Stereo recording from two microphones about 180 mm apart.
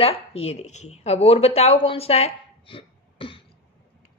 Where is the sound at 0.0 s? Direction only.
30° left (ahead or behind).